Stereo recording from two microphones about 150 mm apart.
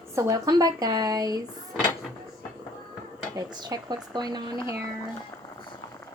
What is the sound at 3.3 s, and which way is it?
Speech, 25° right (ahead or behind).